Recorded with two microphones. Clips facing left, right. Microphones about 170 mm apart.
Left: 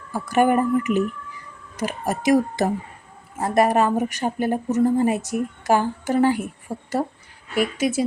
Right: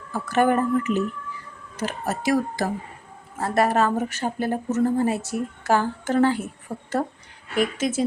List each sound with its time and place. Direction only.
0.1 s speech: 15° left (ahead or behind)